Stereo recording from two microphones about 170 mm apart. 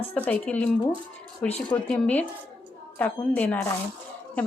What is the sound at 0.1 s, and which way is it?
Speech, 10° left (ahead or behind).